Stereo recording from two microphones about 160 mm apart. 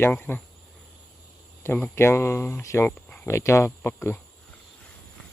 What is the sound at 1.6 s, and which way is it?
Speech, 15° left (ahead or behind).